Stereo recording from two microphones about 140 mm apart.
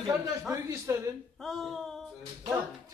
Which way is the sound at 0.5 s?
20° right (ahead or behind).